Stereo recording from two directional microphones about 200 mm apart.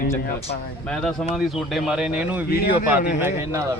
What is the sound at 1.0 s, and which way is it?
Speech, centre (ahead or behind).